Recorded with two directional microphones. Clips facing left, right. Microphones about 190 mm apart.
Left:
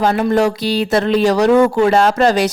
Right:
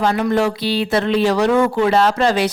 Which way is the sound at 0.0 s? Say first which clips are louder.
Left 3 dB; 45° left (ahead or behind).